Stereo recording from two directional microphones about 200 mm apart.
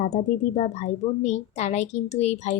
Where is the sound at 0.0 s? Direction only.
40° left (ahead or behind).